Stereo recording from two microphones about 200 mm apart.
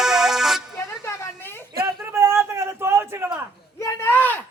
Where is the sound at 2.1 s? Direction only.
15° right (ahead or behind).